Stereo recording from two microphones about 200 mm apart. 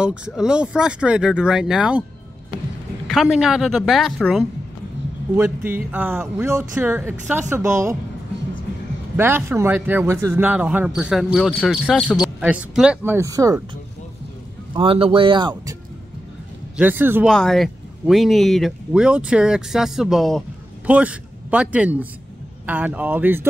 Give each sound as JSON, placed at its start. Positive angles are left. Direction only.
{"t": 0.0, "sound": "speech", "side_deg": -5}
{"t": 3.1, "sound": "speech", "side_deg": 0}
{"t": 5.3, "sound": "speech", "side_deg": -10}
{"t": 9.1, "sound": "speech", "side_deg": -10}
{"t": 14.7, "sound": "speech", "side_deg": -25}
{"t": 16.7, "sound": "speech", "side_deg": -10}
{"t": 17.3, "sound": "speech", "side_deg": 0}